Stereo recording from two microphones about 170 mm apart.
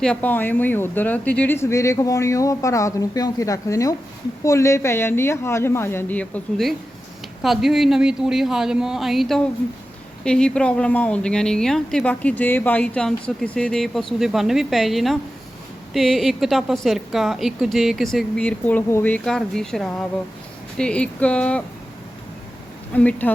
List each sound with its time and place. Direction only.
0.0 s speech: 10° left (ahead or behind)
23.0 s speech: 10° left (ahead or behind)